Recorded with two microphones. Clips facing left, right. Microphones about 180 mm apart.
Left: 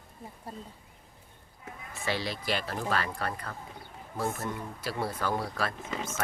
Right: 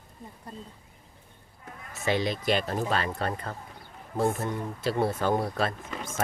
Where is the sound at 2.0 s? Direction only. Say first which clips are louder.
Right 6 dB; 20° right (ahead or behind).